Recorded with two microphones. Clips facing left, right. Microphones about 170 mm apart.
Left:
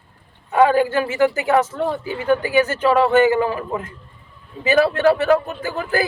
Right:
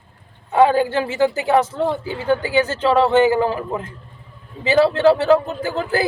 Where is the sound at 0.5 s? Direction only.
25° right (ahead or behind).